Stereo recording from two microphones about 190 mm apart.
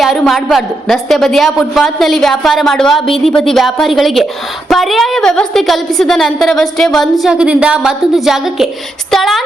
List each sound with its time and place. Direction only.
0.0 s a woman's voice: centre (ahead or behind)